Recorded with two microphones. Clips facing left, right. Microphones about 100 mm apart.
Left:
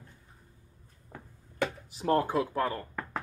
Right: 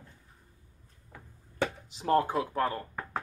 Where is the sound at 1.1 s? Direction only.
35° left (ahead or behind).